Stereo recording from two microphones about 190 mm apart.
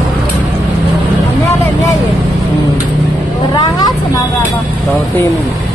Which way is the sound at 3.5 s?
20° left (ahead or behind).